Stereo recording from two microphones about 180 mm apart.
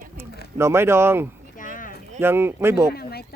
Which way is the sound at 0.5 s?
15° right (ahead or behind).